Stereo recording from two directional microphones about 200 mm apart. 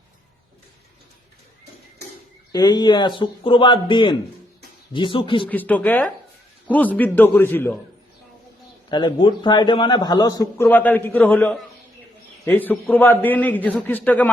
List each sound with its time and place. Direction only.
2.5 s a man's voice: 20° left (ahead or behind)
5.5 s a man's voice: 10° left (ahead or behind)
8.9 s a man's voice: 25° left (ahead or behind)